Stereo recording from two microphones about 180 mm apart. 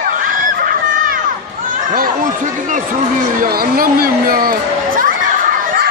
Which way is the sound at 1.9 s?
50° right (ahead or behind).